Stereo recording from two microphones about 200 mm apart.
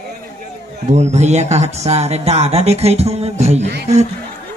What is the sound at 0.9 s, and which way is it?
Speech, 35° right (ahead or behind).